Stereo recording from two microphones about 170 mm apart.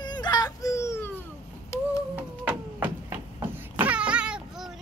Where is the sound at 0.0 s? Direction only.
25° left (ahead or behind).